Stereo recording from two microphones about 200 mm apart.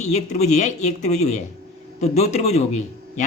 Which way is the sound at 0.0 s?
35° left (ahead or behind).